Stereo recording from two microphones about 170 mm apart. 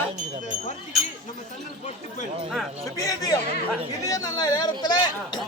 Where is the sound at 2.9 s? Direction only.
20° left (ahead or behind).